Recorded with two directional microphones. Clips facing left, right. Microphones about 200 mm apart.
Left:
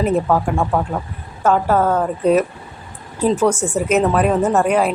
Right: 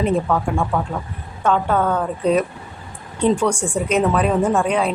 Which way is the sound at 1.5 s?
5° left (ahead or behind).